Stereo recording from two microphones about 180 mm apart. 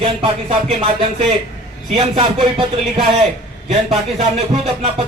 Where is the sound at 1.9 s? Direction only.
30° right (ahead or behind).